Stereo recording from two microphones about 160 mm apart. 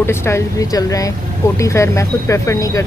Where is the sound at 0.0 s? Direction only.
15° left (ahead or behind).